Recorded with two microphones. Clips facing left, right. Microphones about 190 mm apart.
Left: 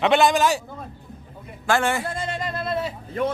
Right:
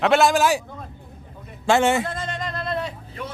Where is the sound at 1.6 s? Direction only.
25° right (ahead or behind).